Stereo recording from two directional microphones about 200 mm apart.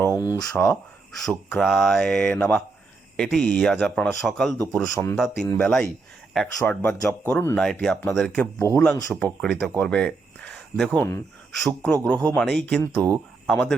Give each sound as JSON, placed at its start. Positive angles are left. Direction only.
{"t": 0.0, "sound": "a sound", "side_deg": 15}
{"t": 0.5, "sound": "speech", "side_deg": 5}
{"t": 13.5, "sound": "speech", "side_deg": 5}